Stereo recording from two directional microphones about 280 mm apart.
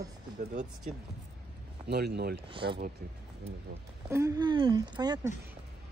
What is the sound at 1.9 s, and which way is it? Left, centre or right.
Speech, right.